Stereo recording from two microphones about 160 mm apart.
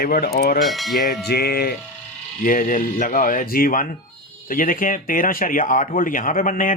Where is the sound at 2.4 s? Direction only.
55° left (ahead or behind).